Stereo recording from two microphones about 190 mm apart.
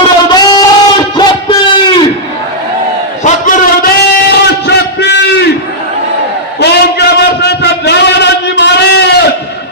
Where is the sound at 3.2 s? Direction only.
45° left (ahead or behind).